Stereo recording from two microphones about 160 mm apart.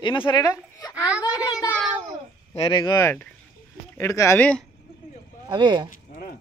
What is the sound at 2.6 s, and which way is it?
Speech, 30° left (ahead or behind).